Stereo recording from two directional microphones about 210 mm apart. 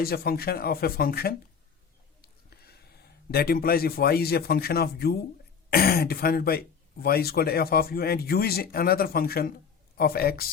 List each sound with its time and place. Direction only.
0.0 s speech: 45° left (ahead or behind)